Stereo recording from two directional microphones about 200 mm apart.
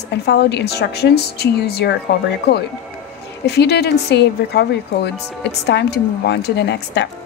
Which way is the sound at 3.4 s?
55° left (ahead or behind).